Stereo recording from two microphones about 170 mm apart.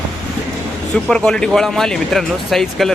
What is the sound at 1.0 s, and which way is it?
Speech, 5° left (ahead or behind).